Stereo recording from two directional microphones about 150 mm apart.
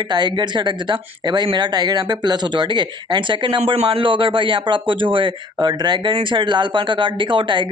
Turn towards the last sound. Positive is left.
turn(degrees=-30)  # may be behind; listen again after turning